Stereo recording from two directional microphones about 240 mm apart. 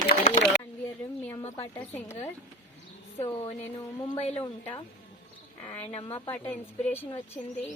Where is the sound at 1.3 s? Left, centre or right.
Centre.